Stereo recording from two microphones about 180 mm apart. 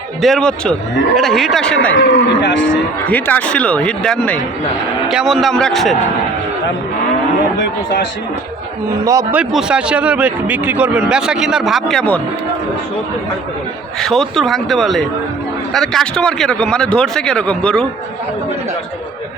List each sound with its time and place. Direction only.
0.2 s speech: centre (ahead or behind)
2.0 s speech: 80° left
3.1 s speech: 10° left (ahead or behind)
9.0 s a man's voice: 15° right (ahead or behind)
9.4 s speech: 5° right (ahead or behind)
14.0 s speech: centre (ahead or behind)